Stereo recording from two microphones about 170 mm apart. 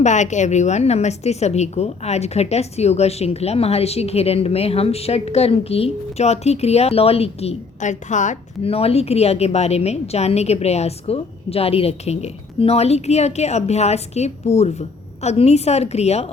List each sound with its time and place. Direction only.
0.0 s a woman's voice: 45° left (ahead or behind)